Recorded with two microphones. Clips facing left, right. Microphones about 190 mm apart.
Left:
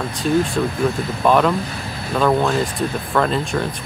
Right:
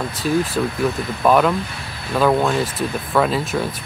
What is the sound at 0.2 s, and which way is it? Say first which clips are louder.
Speech: left 1 dB; 5° right (ahead or behind).